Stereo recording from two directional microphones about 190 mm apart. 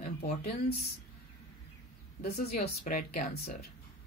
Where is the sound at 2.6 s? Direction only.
45° left (ahead or behind).